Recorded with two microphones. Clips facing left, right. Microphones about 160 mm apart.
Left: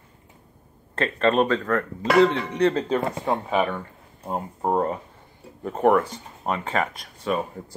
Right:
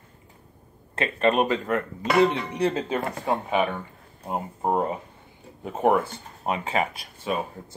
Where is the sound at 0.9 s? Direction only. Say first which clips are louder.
Left 1 dB; 10° right (ahead or behind).